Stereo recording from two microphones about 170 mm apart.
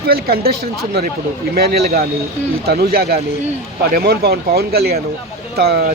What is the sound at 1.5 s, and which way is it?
Speech, 65° right (ahead or behind).